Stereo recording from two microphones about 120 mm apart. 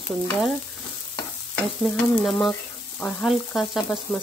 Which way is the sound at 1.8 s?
5° left (ahead or behind).